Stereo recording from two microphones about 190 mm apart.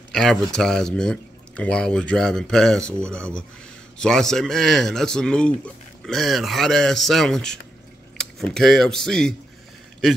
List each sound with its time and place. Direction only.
0.1 s speech: centre (ahead or behind)